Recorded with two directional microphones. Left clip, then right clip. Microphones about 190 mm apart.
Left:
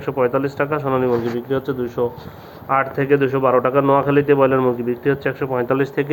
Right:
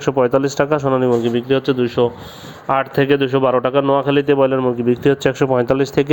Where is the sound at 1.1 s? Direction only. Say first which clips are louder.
Right 4 dB; 40° right (ahead or behind).